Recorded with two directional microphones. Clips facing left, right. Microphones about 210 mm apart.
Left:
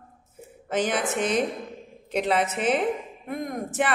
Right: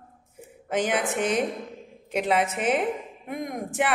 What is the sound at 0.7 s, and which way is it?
A woman's voice, 10° right (ahead or behind).